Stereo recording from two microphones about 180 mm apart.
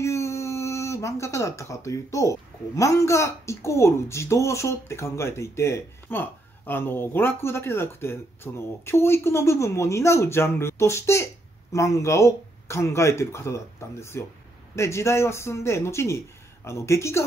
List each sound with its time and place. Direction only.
0.0 s speech: 15° left (ahead or behind)